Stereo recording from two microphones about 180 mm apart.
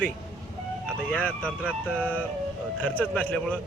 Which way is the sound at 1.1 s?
10° left (ahead or behind).